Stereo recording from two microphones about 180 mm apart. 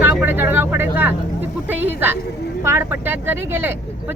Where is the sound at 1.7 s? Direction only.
10° right (ahead or behind).